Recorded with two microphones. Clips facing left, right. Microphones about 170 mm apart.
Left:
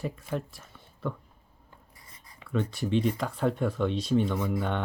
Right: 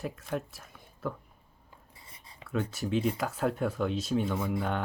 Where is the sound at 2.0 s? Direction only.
25° right (ahead or behind).